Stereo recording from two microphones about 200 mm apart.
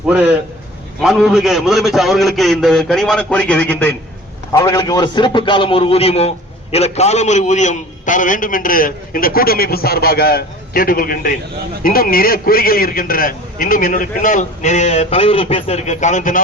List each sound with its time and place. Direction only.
1.0 s a man's voice: centre (ahead or behind)
4.5 s a man's voice: 20° left (ahead or behind); by 16.4 s 40° left (ahead or behind)